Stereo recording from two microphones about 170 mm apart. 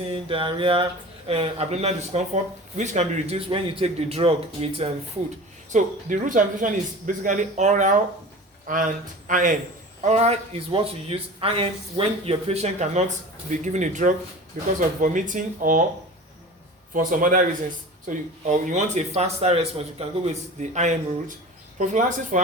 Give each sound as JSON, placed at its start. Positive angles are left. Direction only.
{"t": 0.1, "sound": "speech", "side_deg": -30}
{"t": 5.7, "sound": "speech", "side_deg": -50}
{"t": 16.9, "sound": "speech", "side_deg": -50}